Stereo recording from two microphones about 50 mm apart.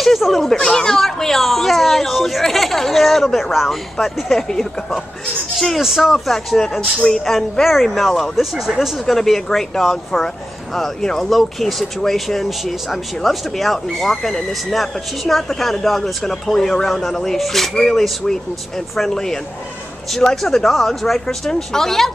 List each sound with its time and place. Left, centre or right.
0.0 s speech: centre
6.1 s speech: centre